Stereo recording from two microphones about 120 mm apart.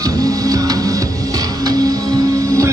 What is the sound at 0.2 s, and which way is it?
Music, 30° right (ahead or behind).